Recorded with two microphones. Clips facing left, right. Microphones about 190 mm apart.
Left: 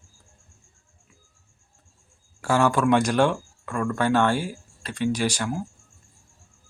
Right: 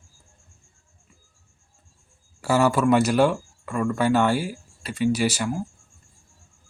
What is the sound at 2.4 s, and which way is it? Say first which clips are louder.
Speech: right 1 dB; 5° right (ahead or behind).